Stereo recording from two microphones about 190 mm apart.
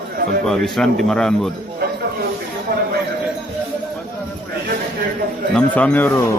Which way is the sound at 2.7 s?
50° right (ahead or behind).